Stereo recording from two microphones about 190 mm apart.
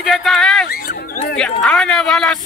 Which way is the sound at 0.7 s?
45° left (ahead or behind).